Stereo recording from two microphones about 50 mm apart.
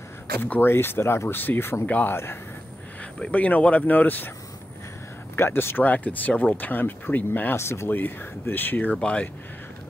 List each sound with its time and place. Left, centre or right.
0.6 s speech: left
1.3 s speech: left
1.9 s speech: left
3.3 s speech: left
5.3 s speech: left
5.9 s speech: left
7.5 s speech: left
7.9 s speech: left
9.0 s speech: left